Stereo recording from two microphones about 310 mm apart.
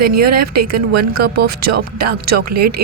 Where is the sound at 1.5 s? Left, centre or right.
Right.